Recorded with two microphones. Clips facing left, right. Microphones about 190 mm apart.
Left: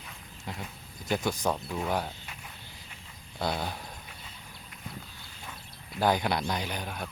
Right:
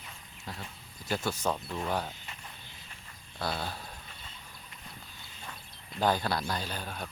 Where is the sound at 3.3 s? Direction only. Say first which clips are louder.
Left 3 dB; 20° left (ahead or behind).